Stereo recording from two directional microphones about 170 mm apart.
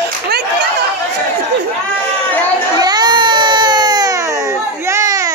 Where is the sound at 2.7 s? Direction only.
25° right (ahead or behind).